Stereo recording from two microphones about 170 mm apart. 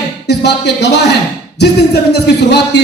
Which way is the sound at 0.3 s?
80° left.